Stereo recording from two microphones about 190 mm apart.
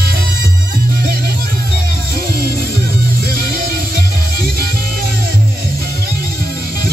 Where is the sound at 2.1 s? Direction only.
55° left (ahead or behind).